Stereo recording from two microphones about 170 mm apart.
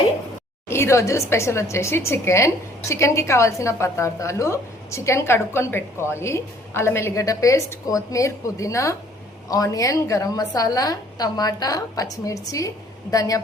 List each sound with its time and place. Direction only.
0.7 s a woman's voice: 15° left (ahead or behind)